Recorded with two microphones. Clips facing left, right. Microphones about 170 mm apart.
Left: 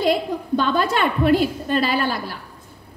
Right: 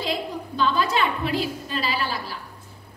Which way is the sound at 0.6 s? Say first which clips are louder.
Left 2 dB; 55° left (ahead or behind).